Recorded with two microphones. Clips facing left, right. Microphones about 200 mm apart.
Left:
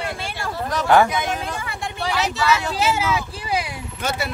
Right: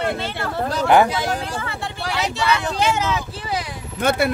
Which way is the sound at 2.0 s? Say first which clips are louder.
Left 2 dB; centre (ahead or behind).